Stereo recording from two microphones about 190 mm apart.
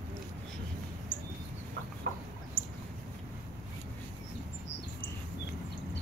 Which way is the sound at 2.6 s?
50° left (ahead or behind).